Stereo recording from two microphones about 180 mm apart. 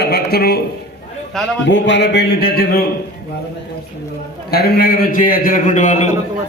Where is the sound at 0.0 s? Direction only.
60° left (ahead or behind).